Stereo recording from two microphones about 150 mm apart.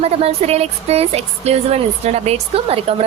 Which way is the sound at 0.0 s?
45° right (ahead or behind).